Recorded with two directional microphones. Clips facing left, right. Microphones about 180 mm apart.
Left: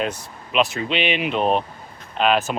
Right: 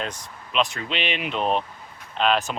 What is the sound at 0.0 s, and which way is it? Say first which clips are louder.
Speech: left 6 dB; 10° left (ahead or behind).